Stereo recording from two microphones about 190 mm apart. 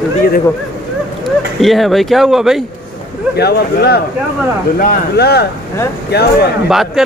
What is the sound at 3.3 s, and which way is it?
Speech, 55° left (ahead or behind).